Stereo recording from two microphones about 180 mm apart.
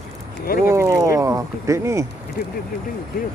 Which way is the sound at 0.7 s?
15° right (ahead or behind).